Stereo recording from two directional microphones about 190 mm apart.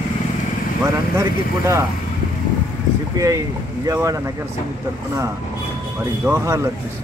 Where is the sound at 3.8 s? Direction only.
15° right (ahead or behind).